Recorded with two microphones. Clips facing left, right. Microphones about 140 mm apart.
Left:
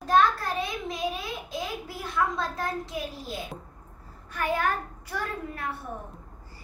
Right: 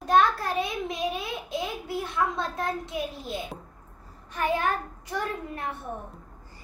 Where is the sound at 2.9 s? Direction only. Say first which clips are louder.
Right 2 dB; centre (ahead or behind).